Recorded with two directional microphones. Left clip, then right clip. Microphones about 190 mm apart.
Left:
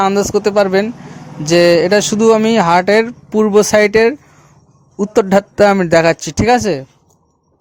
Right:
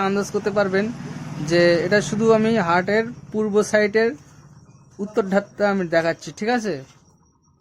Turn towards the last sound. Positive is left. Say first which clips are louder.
# left 11 dB
turn(degrees=30)  # may be behind; listen again after turning